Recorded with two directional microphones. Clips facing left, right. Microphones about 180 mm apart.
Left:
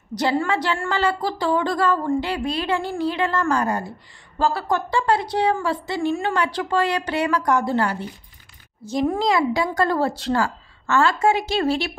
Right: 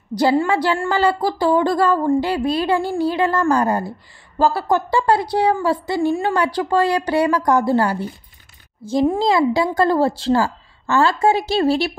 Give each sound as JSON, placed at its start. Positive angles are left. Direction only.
{"t": 0.1, "sound": "a woman's voice", "side_deg": -30}